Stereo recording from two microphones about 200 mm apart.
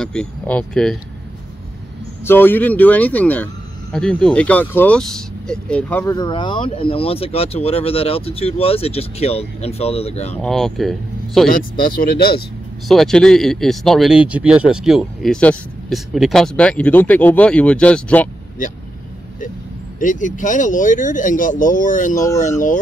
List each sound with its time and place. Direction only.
0.0 s speech: 5° left (ahead or behind)
2.2 s speech: 10° left (ahead or behind)
6.1 s speech: 25° left (ahead or behind)
10.4 s speech: centre (ahead or behind)
12.0 s speech: 50° left (ahead or behind)
12.8 s speech: centre (ahead or behind)
20.0 s speech: 40° left (ahead or behind)